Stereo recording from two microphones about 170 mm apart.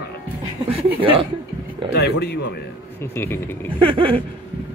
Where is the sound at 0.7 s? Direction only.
35° right (ahead or behind).